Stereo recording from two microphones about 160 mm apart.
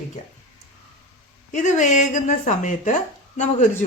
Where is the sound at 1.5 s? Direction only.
50° left (ahead or behind).